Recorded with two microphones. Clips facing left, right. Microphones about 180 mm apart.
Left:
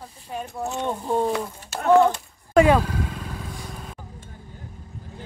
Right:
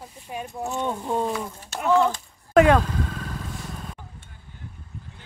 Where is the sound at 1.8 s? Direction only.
55° left (ahead or behind).